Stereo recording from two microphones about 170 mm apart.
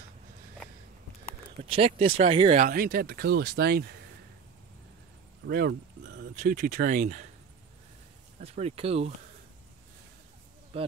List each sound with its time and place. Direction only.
1.6 s speech: 35° right (ahead or behind)
2.6 s speech: 55° right (ahead or behind)
5.5 s a sound: 75° right (ahead or behind)
6.3 s speech: 45° right (ahead or behind)
8.4 s speech: 35° right (ahead or behind)
10.7 s speech: 35° right (ahead or behind)